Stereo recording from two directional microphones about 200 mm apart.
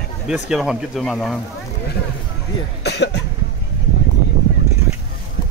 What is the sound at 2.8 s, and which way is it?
Cough, 55° left (ahead or behind).